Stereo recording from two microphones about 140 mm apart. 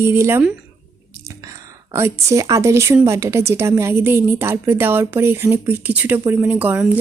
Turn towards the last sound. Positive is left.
turn(degrees=-10)  # may be behind; listen again after turning